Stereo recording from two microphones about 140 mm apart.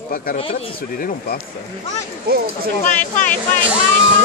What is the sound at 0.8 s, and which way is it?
Speech, 90° left.